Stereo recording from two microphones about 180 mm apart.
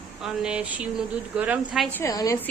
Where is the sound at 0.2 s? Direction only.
5° right (ahead or behind).